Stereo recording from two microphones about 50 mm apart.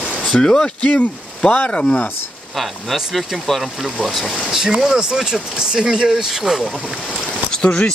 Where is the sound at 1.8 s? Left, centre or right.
Centre.